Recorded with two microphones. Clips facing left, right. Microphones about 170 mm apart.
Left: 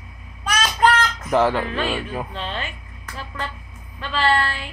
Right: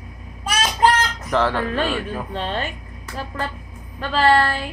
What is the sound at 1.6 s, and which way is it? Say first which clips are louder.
Speech: right 2 dB; 45° right (ahead or behind).